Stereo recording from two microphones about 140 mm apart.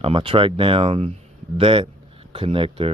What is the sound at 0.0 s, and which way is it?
Speech, 40° right (ahead or behind).